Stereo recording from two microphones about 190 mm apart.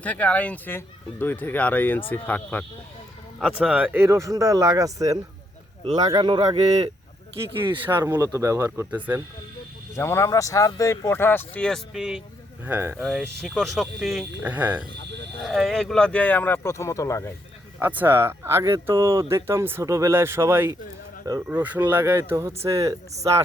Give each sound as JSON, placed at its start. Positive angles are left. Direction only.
{"t": 0.0, "sound": "speech", "side_deg": 10}
{"t": 3.4, "sound": "speech", "side_deg": -5}
{"t": 7.9, "sound": "speech", "side_deg": -10}
{"t": 9.9, "sound": "speech", "side_deg": 15}
{"t": 13.0, "sound": "speech", "side_deg": 0}
{"t": 17.7, "sound": "speech", "side_deg": -10}